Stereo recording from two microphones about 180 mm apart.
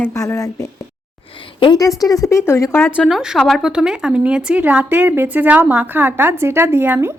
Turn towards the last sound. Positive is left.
turn(degrees=-10)  # may be behind; listen again after turning